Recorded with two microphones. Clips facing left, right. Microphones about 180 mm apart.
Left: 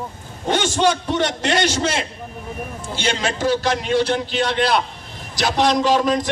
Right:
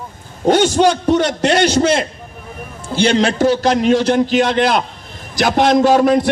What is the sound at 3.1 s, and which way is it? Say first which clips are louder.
Speech: right 7 dB; 60° right (ahead or behind).